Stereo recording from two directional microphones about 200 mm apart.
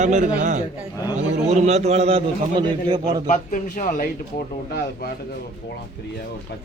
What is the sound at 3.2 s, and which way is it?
Speech, 40° left (ahead or behind).